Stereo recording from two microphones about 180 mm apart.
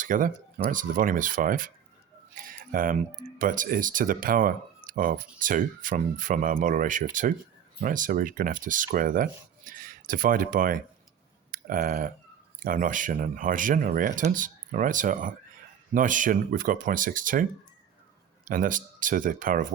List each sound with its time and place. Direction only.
0.0 s speech: 50° right (ahead or behind)
18.4 s speech: 50° right (ahead or behind)